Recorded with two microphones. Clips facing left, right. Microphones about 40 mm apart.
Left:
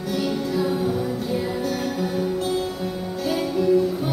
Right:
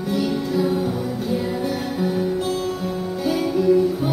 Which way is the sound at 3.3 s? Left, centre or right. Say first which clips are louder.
Right 2 dB; centre.